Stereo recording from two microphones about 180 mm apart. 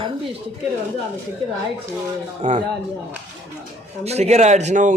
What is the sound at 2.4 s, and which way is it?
Speech, 40° right (ahead or behind).